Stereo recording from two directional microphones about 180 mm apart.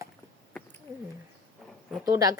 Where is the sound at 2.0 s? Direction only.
20° right (ahead or behind).